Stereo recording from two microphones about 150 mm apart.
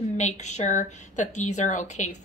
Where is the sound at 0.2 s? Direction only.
50° left (ahead or behind).